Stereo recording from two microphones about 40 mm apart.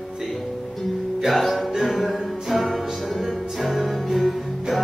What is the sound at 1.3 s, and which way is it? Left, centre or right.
Music, centre.